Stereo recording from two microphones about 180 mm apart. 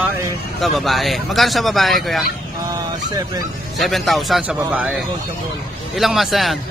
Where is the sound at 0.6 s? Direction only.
Centre (ahead or behind).